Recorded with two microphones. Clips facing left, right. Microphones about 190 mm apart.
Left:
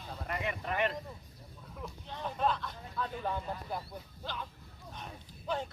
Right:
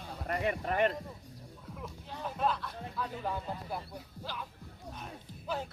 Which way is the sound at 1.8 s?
5° right (ahead or behind).